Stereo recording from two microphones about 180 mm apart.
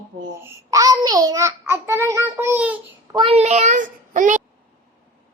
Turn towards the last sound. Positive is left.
turn(degrees=-45)  # may be behind; listen again after turning